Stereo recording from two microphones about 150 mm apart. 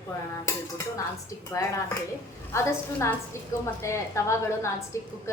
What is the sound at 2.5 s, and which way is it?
A woman's voice, 20° left (ahead or behind).